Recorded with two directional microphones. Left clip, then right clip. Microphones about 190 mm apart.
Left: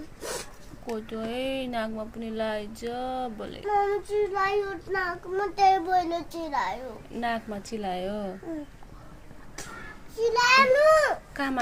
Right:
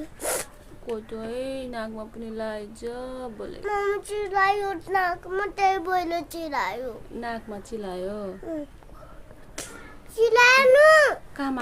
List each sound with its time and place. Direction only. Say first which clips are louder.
0.2 s zipper: right 6 dB; 70° right (ahead or behind)
0.9 s speech: right 1 dB; 5° right (ahead or behind)
3.8 s child singing: left 2 dB; 35° right (ahead or behind)
4.2 s child singing: right 4 dB; 65° right (ahead or behind)
5.3 s a child's voice: left 4 dB; 20° right (ahead or behind)
7.2 s speech: left 5 dB; 5° right (ahead or behind)
9.6 s a sound: right 3 dB; 40° right (ahead or behind)
10.2 s a child's voice: right 3 dB; 35° right (ahead or behind)